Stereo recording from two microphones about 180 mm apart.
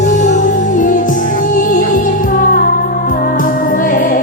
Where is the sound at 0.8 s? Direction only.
50° left (ahead or behind).